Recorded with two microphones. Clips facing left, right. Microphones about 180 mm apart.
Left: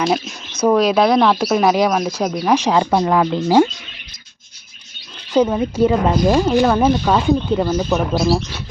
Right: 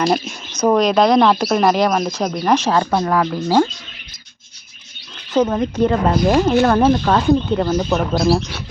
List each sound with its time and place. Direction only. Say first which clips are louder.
0.0 s speech: right 1 dB; 5° left (ahead or behind)
5.3 s speech: left 1 dB; 10° left (ahead or behind)
6.2 s speech: right 1 dB; 5° right (ahead or behind)